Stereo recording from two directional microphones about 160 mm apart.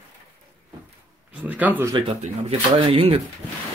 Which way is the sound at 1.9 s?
40° right (ahead or behind).